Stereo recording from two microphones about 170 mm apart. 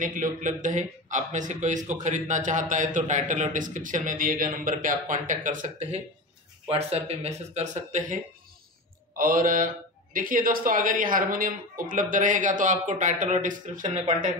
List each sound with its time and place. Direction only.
0.0 s a man's voice: 50° right (ahead or behind)